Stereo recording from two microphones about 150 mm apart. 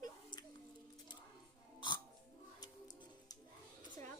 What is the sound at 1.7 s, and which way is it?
Hiccup, 30° left (ahead or behind).